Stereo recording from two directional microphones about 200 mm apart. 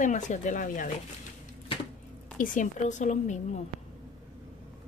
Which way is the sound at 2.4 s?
40° left (ahead or behind).